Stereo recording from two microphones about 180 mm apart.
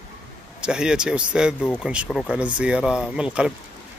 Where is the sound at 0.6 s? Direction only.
5° right (ahead or behind).